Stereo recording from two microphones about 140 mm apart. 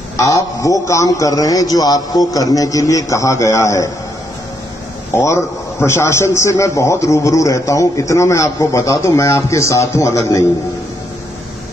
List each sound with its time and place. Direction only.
0.2 s a man's voice: 25° left (ahead or behind)
5.1 s a man's voice: 20° left (ahead or behind)